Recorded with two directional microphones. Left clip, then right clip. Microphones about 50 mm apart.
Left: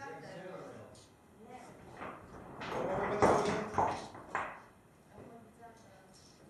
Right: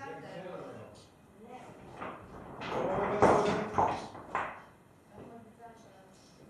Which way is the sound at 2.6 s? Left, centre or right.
Centre.